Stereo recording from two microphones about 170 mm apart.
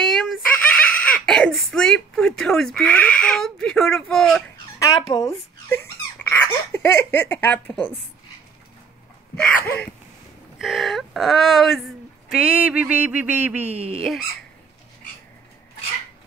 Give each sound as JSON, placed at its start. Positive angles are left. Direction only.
{"t": 0.0, "sound": "giggle", "side_deg": 0}
{"t": 0.8, "sound": "speech", "side_deg": 5}
{"t": 4.7, "sound": "speech", "side_deg": 20}
{"t": 9.4, "sound": "a sound", "side_deg": 5}
{"t": 10.6, "sound": "speech", "side_deg": 0}
{"t": 12.3, "sound": "a sound", "side_deg": -5}
{"t": 13.7, "sound": "speech", "side_deg": -35}